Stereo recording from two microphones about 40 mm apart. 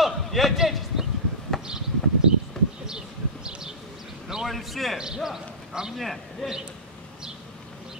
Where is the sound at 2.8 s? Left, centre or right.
Centre.